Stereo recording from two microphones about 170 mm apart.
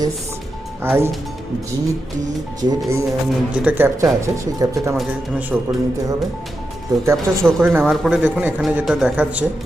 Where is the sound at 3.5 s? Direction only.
10° right (ahead or behind).